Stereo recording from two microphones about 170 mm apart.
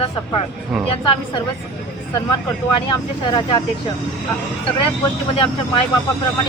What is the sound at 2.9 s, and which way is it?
Speech, 25° left (ahead or behind).